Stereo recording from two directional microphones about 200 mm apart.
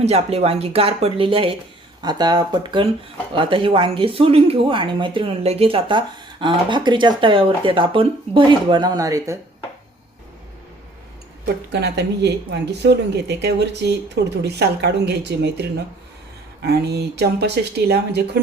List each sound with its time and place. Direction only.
0.0 s speech: 30° right (ahead or behind); by 9.4 s 15° right (ahead or behind)
11.7 s speech: 55° right (ahead or behind)
16.6 s speech: 55° right (ahead or behind)